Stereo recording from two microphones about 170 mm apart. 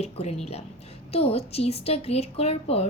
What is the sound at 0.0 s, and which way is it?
A woman's voice, 35° left (ahead or behind).